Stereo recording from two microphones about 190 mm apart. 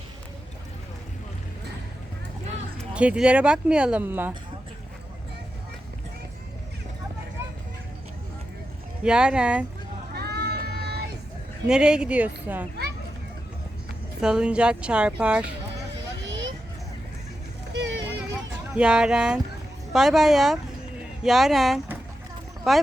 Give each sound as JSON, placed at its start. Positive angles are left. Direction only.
{"t": 2.9, "sound": "speech", "side_deg": -5}
{"t": 9.0, "sound": "speech", "side_deg": -5}
{"t": 10.2, "sound": "a sound", "side_deg": -55}
{"t": 11.7, "sound": "speech", "side_deg": -5}
{"t": 14.2, "sound": "speech", "side_deg": -5}
{"t": 16.2, "sound": "a sound", "side_deg": -70}
{"t": 17.7, "sound": "vehicle", "side_deg": -70}
{"t": 18.7, "sound": "speech", "side_deg": -5}